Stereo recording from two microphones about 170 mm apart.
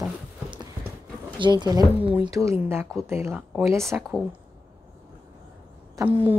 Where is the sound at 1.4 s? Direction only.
25° right (ahead or behind).